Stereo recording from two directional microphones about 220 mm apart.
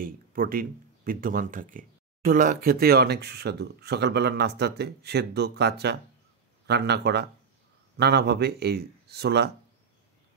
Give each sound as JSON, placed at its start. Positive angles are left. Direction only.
{"t": 0.0, "sound": "speech", "side_deg": -40}